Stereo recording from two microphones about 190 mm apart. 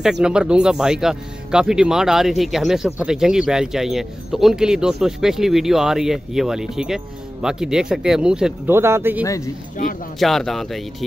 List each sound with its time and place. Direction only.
0.2 s speech: 5° right (ahead or behind)
9.2 s speech: 15° left (ahead or behind)
10.1 s speech: centre (ahead or behind)